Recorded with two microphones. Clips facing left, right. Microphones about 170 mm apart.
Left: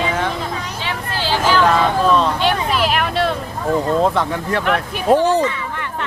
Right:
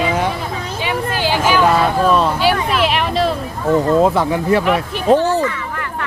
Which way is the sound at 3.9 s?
10° right (ahead or behind).